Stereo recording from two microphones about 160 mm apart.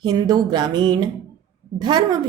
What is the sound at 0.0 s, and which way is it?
A woman's voice, 25° right (ahead or behind).